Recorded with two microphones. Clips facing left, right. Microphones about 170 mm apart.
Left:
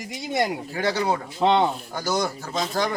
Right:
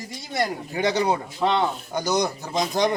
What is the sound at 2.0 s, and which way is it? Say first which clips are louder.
Speech: right 3 dB; 20° right (ahead or behind).